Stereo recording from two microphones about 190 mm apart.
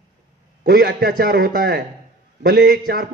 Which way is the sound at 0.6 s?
60° right (ahead or behind).